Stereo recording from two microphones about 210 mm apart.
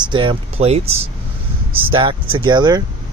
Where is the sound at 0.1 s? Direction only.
25° right (ahead or behind).